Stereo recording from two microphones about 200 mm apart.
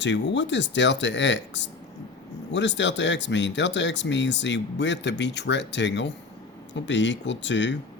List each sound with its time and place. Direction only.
0.0 s speech: 65° left (ahead or behind)